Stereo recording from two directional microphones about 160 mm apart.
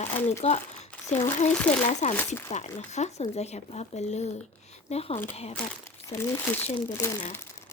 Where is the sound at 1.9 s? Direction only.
45° left (ahead or behind).